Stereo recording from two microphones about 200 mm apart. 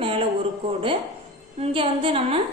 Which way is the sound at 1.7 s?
25° right (ahead or behind).